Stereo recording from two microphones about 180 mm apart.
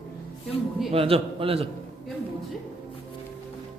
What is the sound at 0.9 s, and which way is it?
Speech, 30° right (ahead or behind).